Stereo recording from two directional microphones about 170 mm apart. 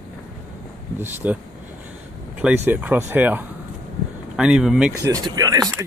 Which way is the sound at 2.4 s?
10° right (ahead or behind).